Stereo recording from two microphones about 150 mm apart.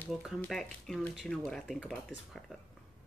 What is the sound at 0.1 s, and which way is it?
Speech, centre (ahead or behind).